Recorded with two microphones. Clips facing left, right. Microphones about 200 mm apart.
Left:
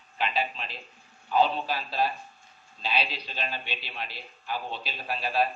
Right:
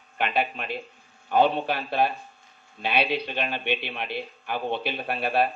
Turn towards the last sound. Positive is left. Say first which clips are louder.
# right 3 dB
turn(degrees=-60)  # may be behind; listen again after turning